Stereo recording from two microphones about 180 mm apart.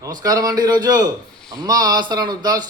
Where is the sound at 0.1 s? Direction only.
20° right (ahead or behind).